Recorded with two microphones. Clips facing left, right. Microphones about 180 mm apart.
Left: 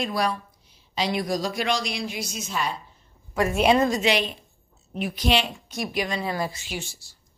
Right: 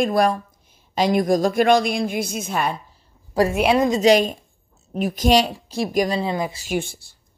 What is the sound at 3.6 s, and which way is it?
Speech, 5° right (ahead or behind).